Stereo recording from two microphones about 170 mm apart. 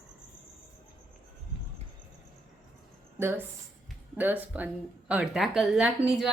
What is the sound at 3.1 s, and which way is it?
Speech, 15° right (ahead or behind).